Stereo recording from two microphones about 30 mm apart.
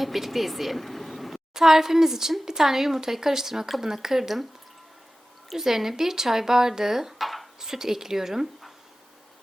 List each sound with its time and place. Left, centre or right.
0.0 s speech: centre
1.5 s speech: centre
5.5 s speech: centre
7.2 s dishes: centre
7.6 s speech: centre